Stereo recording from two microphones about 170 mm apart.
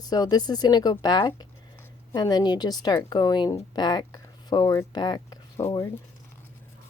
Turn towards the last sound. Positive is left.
turn(degrees=20)  # may be behind; listen again after turning